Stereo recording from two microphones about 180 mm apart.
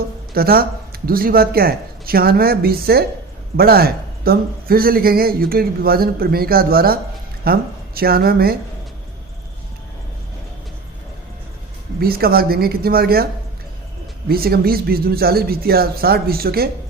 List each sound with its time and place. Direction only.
0.3 s a man's voice: 55° right (ahead or behind)
11.9 s a man's voice: 55° right (ahead or behind)
14.3 s a man's voice: 60° right (ahead or behind)